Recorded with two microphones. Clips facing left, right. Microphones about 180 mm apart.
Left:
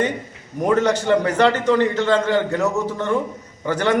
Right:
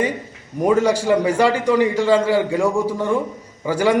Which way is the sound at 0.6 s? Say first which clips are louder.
Right 2 dB; 10° right (ahead or behind).